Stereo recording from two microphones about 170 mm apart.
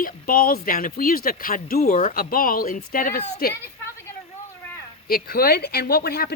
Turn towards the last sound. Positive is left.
turn(degrees=65)  # may be behind; listen again after turning